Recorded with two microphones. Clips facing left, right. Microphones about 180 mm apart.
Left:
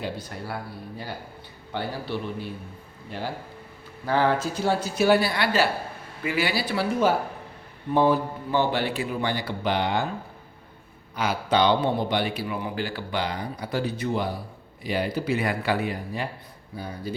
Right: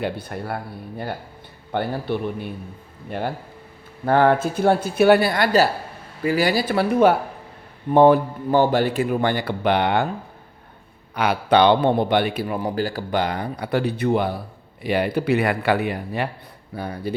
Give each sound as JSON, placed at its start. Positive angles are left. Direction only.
{"t": 0.0, "sound": "a man's voice", "side_deg": -60}
{"t": 11.1, "sound": "a man's voice", "side_deg": -65}